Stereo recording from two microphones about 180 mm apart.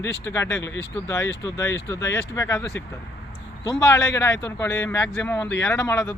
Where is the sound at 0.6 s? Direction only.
90° left.